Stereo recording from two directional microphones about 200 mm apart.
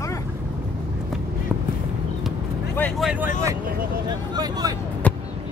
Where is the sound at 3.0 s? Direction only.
5° right (ahead or behind).